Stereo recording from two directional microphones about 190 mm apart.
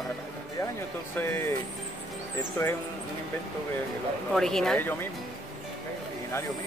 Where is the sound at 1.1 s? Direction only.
10° left (ahead or behind).